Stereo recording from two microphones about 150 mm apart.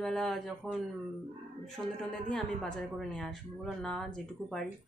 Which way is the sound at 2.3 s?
5° left (ahead or behind).